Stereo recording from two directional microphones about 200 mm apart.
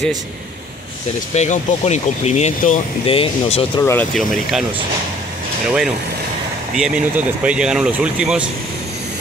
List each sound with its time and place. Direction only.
1.3 s speech: 35° left (ahead or behind)
3.8 s speech: 10° left (ahead or behind)
6.8 s speech: 5° right (ahead or behind)